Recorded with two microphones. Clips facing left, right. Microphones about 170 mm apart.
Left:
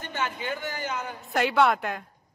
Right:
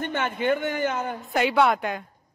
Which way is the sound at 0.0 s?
55° right (ahead or behind).